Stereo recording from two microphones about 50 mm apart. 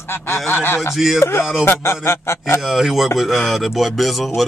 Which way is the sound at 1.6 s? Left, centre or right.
Left.